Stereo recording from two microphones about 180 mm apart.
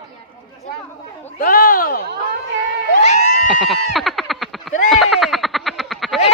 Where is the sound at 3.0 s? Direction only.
40° left (ahead or behind).